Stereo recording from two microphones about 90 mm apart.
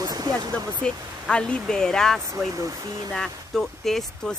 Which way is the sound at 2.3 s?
40° right (ahead or behind).